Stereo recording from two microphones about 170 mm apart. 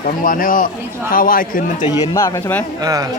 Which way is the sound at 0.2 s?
55° left (ahead or behind).